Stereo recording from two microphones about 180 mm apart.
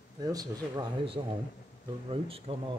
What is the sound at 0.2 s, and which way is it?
A man's voice, 20° right (ahead or behind).